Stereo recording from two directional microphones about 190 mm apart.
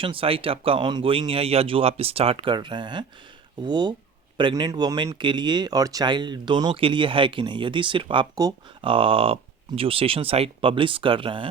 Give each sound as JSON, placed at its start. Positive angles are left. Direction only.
{"t": 0.0, "sound": "speech", "side_deg": -30}